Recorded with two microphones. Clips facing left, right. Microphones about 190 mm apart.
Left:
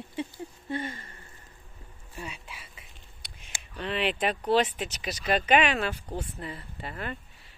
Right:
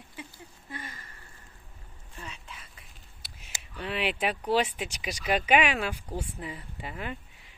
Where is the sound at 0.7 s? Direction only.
30° left (ahead or behind).